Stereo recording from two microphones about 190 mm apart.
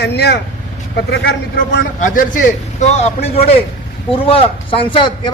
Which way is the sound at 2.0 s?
45° left (ahead or behind).